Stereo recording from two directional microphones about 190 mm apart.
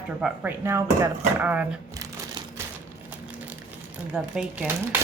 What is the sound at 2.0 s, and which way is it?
Crumpling, 15° right (ahead or behind).